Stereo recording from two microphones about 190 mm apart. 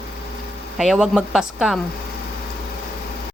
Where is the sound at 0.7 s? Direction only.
Centre (ahead or behind).